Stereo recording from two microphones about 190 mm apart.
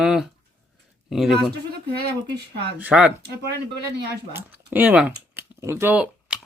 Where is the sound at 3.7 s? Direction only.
60° right (ahead or behind).